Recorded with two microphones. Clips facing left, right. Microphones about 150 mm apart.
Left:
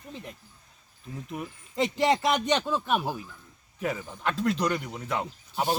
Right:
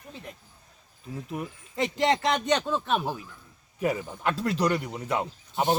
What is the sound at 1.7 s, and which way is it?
Speech, 15° left (ahead or behind).